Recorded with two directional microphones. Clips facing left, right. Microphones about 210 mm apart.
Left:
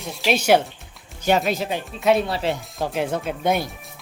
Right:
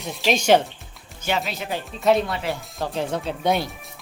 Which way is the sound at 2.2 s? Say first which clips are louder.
Left 3 dB; 30° left (ahead or behind).